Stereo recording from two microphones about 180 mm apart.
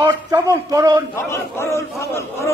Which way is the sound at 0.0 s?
20° right (ahead or behind).